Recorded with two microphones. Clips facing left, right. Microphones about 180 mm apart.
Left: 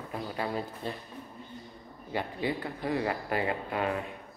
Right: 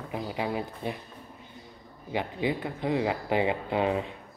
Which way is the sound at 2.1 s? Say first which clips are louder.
Right 3 dB; 15° right (ahead or behind).